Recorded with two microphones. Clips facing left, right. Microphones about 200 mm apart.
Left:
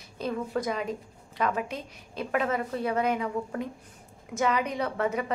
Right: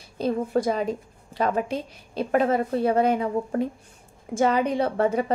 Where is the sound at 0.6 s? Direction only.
30° right (ahead or behind).